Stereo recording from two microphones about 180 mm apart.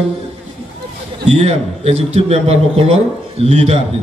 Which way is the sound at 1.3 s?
35° right (ahead or behind).